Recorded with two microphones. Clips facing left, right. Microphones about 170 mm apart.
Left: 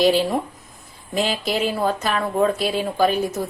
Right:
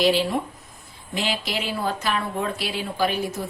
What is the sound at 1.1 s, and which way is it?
A woman's voice, 45° left (ahead or behind).